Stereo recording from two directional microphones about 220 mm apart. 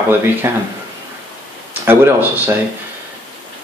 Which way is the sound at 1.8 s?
10° right (ahead or behind).